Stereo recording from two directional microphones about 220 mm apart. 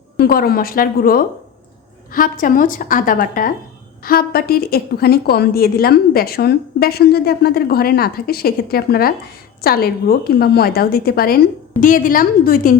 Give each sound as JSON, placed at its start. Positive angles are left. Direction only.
{"t": 0.2, "sound": "a woman's voice", "side_deg": 45}